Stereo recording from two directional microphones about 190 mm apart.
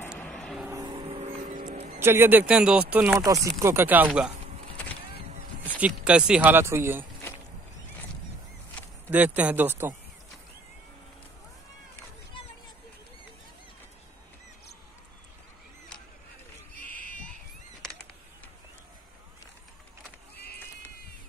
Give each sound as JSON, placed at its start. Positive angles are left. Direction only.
{"t": 0.2, "sound": "vehicle", "side_deg": 5}
{"t": 0.7, "sound": "vehicle", "side_deg": -20}
{"t": 2.0, "sound": "speech", "side_deg": -10}
{"t": 5.8, "sound": "speech", "side_deg": -5}
{"t": 9.1, "sound": "speech", "side_deg": -5}